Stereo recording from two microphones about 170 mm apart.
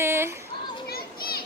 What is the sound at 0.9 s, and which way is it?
Children playing, 65° left (ahead or behind).